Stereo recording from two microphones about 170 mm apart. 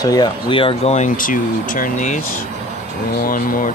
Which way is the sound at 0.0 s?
25° left (ahead or behind).